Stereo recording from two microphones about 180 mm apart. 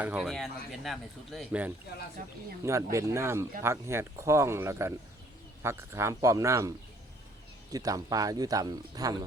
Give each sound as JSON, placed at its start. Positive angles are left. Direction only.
{"t": 0.0, "sound": "speech", "side_deg": -5}
{"t": 2.6, "sound": "speech", "side_deg": -15}